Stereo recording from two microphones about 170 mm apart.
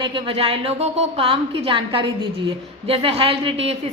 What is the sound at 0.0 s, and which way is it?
A woman's voice, 30° right (ahead or behind).